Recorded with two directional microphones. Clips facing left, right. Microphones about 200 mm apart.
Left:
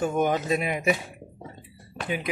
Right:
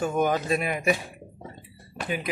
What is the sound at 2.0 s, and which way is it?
Speech, 20° left (ahead or behind).